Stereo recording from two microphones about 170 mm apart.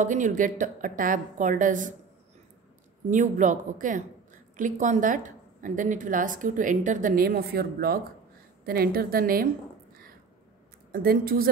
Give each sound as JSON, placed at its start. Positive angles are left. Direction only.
{"t": 0.0, "sound": "a woman's voice", "side_deg": -50}
{"t": 3.1, "sound": "a woman's voice", "side_deg": -50}
{"t": 10.9, "sound": "a woman's voice", "side_deg": -60}